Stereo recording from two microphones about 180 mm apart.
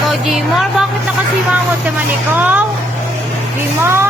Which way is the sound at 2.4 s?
10° right (ahead or behind).